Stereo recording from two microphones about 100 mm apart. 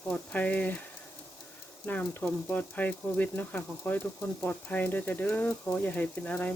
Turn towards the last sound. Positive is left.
turn(degrees=15)  # may be behind; listen again after turning